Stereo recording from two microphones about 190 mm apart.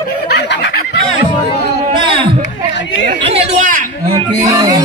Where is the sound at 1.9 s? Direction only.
25° right (ahead or behind).